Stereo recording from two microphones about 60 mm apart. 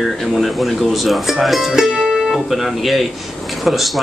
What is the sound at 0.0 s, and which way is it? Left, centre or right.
Speech, centre.